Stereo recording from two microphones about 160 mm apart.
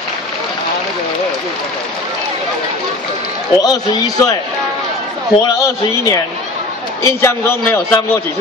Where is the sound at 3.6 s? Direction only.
25° left (ahead or behind).